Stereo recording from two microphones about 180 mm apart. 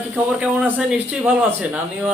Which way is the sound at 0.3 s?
5° right (ahead or behind).